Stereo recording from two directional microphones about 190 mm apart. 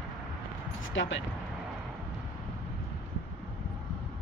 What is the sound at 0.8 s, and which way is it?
Speech, 80° left.